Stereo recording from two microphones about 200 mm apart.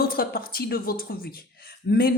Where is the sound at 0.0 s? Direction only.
50° left (ahead or behind).